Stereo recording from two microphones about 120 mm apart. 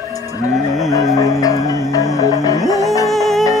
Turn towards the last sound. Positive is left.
turn(degrees=0)  # may be behind; listen again after turning